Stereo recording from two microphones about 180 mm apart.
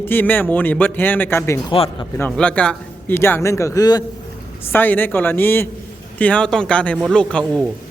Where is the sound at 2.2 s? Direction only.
5° left (ahead or behind).